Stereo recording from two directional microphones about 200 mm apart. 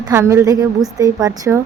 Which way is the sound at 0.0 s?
15° right (ahead or behind).